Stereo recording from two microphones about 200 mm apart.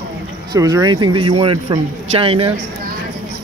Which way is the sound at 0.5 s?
15° right (ahead or behind).